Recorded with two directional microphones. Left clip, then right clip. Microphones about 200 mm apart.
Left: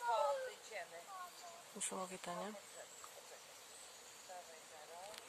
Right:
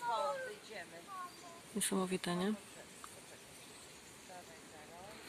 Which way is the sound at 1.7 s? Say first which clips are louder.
Right 8 dB; centre (ahead or behind).